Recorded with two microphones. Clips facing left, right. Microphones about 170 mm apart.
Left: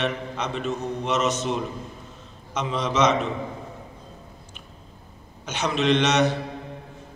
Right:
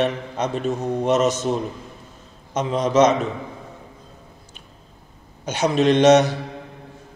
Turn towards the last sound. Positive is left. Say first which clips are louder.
# right 6 dB
turn(degrees=-45)  # may be behind; listen again after turning